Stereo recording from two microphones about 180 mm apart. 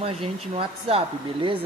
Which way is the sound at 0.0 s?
30° right (ahead or behind).